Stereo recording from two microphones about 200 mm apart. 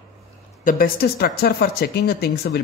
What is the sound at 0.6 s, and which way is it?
Speech, 45° left (ahead or behind).